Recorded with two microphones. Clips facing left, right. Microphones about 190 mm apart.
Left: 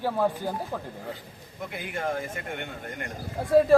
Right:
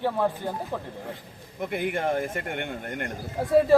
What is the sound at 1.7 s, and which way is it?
Speech, 60° right (ahead or behind).